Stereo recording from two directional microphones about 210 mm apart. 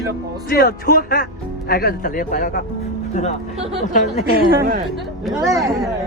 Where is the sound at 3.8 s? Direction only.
40° left (ahead or behind).